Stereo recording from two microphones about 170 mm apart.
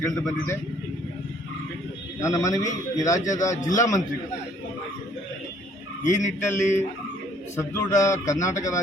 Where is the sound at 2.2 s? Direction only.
20° left (ahead or behind).